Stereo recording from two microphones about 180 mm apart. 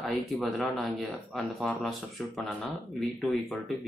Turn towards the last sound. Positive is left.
turn(degrees=0)  # may be behind; listen again after turning